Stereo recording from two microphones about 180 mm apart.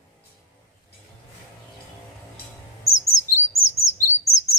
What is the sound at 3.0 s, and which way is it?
Chirp, 15° left (ahead or behind).